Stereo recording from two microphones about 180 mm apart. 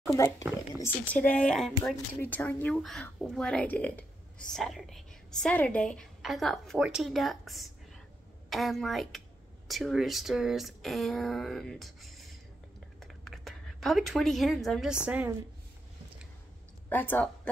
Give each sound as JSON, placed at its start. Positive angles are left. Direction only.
{"t": 0.0, "sound": "speech", "side_deg": 15}
{"t": 16.9, "sound": "speech", "side_deg": 10}